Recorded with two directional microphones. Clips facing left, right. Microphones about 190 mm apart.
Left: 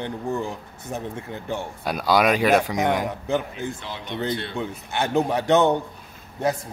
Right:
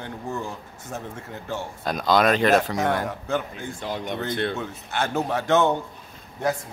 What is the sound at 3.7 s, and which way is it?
Speech, 45° right (ahead or behind).